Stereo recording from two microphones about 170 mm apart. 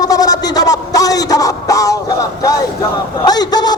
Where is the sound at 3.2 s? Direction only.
20° left (ahead or behind).